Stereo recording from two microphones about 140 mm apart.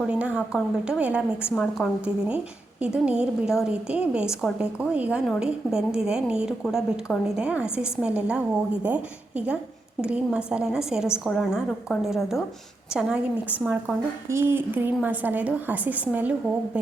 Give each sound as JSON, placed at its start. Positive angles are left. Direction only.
{"t": 0.0, "sound": "a woman's voice", "side_deg": -10}